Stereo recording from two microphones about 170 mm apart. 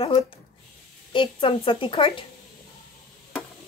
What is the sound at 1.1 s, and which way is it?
A woman's voice, 30° left (ahead or behind).